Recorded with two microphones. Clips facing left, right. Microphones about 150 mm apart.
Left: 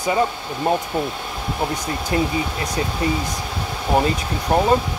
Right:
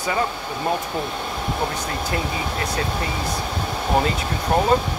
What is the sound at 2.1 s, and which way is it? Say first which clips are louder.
Speech: left 7 dB; 25° left (ahead or behind).